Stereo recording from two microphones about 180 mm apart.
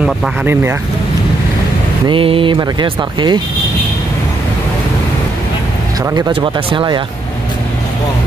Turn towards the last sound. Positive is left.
turn(degrees=-25)  # may be behind; listen again after turning